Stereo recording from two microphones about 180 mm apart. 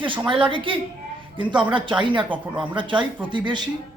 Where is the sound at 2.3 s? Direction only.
10° right (ahead or behind).